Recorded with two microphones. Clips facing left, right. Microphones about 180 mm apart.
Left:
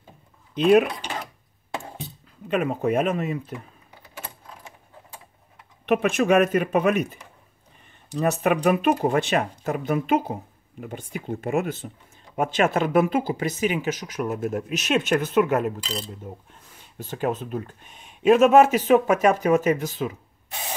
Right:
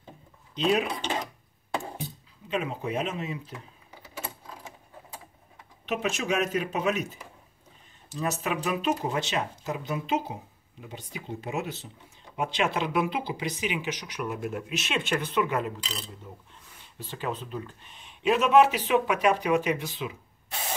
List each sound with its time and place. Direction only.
0.6 s speech: 55° left (ahead or behind)
2.4 s speech: 55° left (ahead or behind)
5.9 s speech: 55° left (ahead or behind)
17.0 s speech: 45° left (ahead or behind)